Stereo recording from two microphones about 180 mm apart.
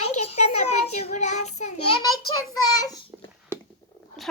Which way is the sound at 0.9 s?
40° left (ahead or behind).